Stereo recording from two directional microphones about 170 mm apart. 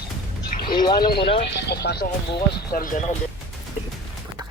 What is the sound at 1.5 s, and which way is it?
Speech, 80° left.